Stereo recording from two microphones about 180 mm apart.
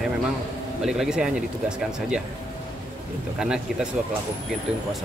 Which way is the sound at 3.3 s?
5° right (ahead or behind).